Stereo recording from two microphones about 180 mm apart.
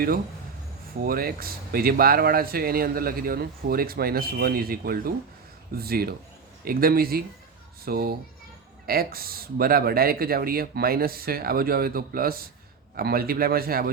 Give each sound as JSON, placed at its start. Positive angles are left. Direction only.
{"t": 1.0, "sound": "speech", "side_deg": -55}